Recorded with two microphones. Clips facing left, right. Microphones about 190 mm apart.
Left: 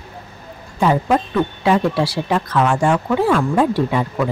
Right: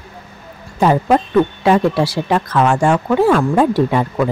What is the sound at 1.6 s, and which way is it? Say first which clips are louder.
Speech: right 3 dB; 45° right (ahead or behind).